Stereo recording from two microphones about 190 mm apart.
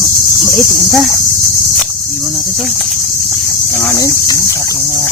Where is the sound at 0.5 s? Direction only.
Centre (ahead or behind).